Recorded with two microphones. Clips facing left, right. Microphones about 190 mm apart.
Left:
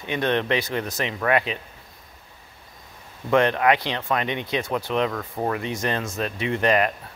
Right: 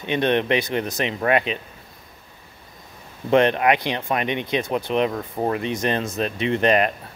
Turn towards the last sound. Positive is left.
turn(degrees=-20)  # may be behind; listen again after turning